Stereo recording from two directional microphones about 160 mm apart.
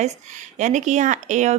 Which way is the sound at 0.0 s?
45° right (ahead or behind).